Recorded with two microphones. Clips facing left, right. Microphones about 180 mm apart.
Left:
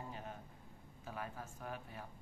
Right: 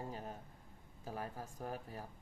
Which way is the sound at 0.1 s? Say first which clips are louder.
Right 2 dB; 35° right (ahead or behind).